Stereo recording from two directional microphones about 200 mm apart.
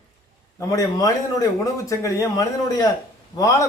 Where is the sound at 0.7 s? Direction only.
15° left (ahead or behind).